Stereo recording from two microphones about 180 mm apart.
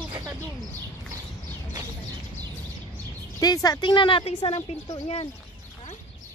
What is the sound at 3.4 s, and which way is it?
Speech, 20° left (ahead or behind).